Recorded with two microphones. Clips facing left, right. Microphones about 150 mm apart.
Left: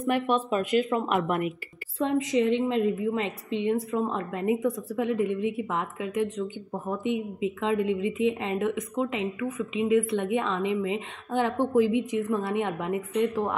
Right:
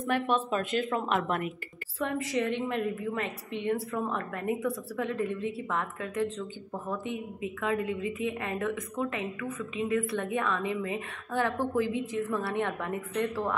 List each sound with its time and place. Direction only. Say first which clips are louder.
0.0 s speech: left 3 dB; 10° left (ahead or behind)
2.0 s a woman's voice: left 6 dB; 20° left (ahead or behind)